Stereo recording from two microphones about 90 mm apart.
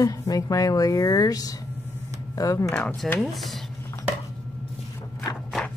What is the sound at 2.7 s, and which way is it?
Speech, 15° left (ahead or behind).